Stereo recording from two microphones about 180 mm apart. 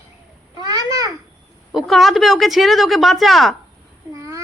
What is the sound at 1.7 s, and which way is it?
A woman's voice, centre (ahead or behind).